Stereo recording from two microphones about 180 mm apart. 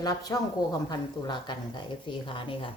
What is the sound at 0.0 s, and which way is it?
A woman's voice, 20° left (ahead or behind).